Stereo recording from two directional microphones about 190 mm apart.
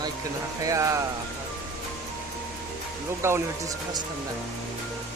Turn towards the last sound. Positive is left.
turn(degrees=-15)  # may be behind; listen again after turning